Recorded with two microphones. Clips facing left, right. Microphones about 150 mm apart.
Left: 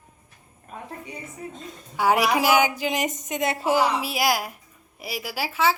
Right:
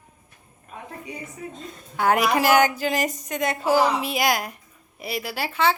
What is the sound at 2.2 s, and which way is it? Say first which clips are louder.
Speech: right 2 dB; 10° left (ahead or behind).